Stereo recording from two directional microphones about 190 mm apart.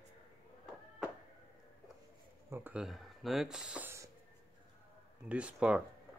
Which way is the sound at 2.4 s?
10° right (ahead or behind).